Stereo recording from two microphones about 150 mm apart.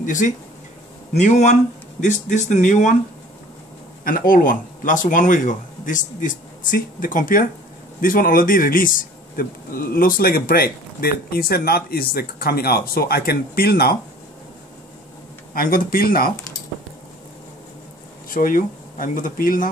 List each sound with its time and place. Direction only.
0.0 s speech: 60° left (ahead or behind)
4.0 s a man's voice: 70° left (ahead or behind); by 13.9 s 90° left
15.5 s speech: 75° left (ahead or behind)
18.3 s speech: 65° left (ahead or behind)